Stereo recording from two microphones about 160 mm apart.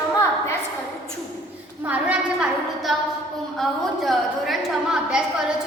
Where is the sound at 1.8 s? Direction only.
10° right (ahead or behind).